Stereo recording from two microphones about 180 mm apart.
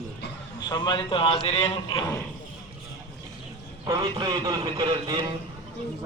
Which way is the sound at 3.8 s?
25° right (ahead or behind).